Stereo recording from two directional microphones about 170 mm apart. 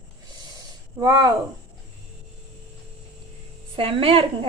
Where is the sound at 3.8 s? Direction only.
35° right (ahead or behind).